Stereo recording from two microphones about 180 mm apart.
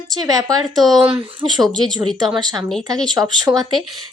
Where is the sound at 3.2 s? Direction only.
10° right (ahead or behind).